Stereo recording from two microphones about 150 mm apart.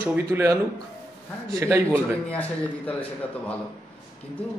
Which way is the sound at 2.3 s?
10° left (ahead or behind).